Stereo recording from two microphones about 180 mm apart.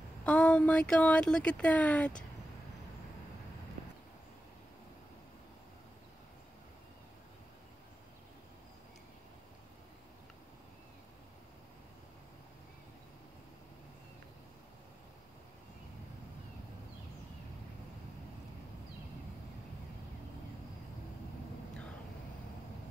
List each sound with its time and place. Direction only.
0.2 s speech: 5° left (ahead or behind)